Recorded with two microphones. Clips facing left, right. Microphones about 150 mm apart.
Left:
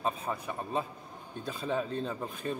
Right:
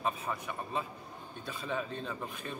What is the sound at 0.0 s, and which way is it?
A man's voice, 35° left (ahead or behind).